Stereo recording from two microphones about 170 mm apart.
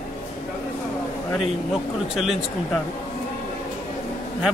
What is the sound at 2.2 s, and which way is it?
Speech, centre (ahead or behind).